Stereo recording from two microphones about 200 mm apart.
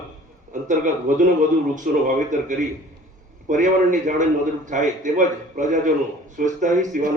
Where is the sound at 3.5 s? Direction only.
40° right (ahead or behind).